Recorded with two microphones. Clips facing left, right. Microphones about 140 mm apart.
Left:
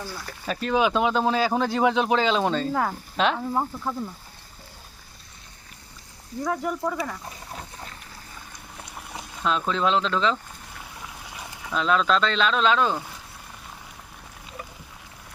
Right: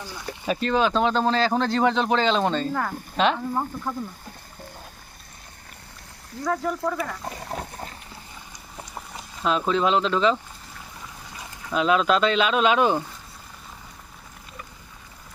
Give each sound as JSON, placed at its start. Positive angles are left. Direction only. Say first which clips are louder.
{"t": 0.3, "sound": "speech", "louder": "right 7 dB", "side_deg": -10}
{"t": 0.6, "sound": "speech", "louder": "even", "side_deg": 10}
{"t": 6.4, "sound": "speech", "louder": "right 1 dB", "side_deg": 15}
{"t": 7.3, "sound": "dog", "louder": "right 6 dB", "side_deg": -50}
{"t": 9.4, "sound": "speech", "louder": "right 2 dB", "side_deg": -5}
{"t": 11.7, "sound": "speech", "louder": "right 2 dB", "side_deg": -10}